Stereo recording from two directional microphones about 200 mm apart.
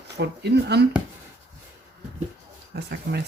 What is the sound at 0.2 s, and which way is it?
Speech, 55° right (ahead or behind).